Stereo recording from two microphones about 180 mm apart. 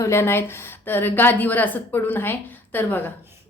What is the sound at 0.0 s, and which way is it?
A woman's voice, 15° left (ahead or behind).